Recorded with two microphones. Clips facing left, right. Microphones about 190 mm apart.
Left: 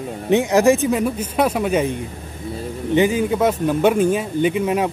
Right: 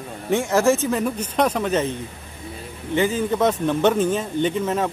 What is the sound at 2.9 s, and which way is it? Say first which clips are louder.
Speech: left 4 dB; 15° left (ahead or behind).